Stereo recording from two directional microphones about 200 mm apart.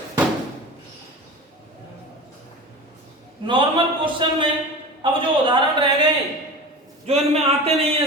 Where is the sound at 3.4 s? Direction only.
25° right (ahead or behind).